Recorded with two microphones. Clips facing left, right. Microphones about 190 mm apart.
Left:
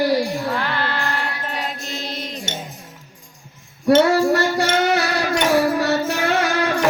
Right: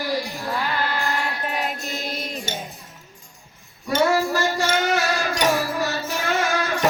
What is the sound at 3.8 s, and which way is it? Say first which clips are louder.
Music: left 6 dB; 65° left (ahead or behind).